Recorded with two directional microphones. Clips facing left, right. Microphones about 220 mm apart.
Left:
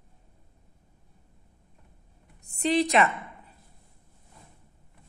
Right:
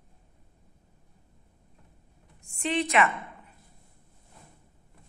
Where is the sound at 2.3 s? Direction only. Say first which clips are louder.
Left 4 dB; 35° left (ahead or behind).